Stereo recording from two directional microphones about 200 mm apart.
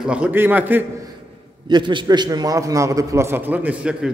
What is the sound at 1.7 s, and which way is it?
A man's voice, 25° right (ahead or behind).